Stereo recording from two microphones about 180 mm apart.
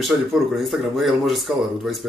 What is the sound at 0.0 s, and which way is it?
Speech, centre (ahead or behind).